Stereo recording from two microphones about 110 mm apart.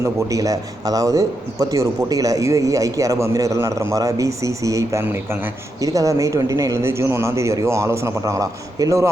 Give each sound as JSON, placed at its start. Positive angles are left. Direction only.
{"t": 0.0, "sound": "a man's voice", "side_deg": -30}